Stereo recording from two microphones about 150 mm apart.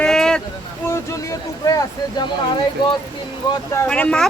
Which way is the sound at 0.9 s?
20° left (ahead or behind).